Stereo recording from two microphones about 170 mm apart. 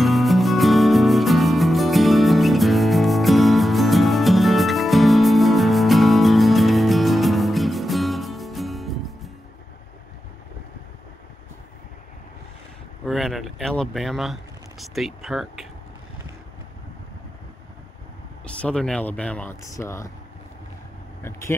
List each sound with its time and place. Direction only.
0.0 s music: centre (ahead or behind)
13.0 s a sound: centre (ahead or behind)
18.4 s speech: 5° left (ahead or behind)
21.2 s speech: 15° left (ahead or behind)